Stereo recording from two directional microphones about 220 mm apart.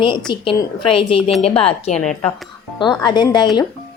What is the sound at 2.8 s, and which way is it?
Speech, 20° left (ahead or behind).